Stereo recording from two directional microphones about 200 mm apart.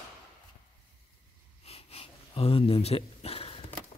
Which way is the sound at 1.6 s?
30° left (ahead or behind).